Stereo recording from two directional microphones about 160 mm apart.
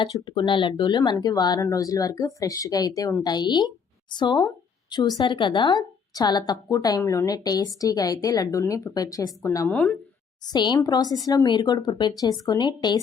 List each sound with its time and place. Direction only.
0.0 s a woman's voice: 30° left (ahead or behind)
9.7 s speech: 5° left (ahead or behind)
10.4 s a woman's voice: 25° left (ahead or behind)